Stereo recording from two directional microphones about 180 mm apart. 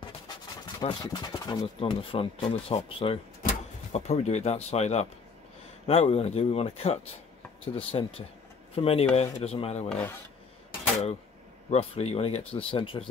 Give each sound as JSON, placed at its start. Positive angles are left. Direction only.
{"t": 0.7, "sound": "speech", "side_deg": 20}
{"t": 9.8, "sound": "speech", "side_deg": 5}
{"t": 11.7, "sound": "speech", "side_deg": 35}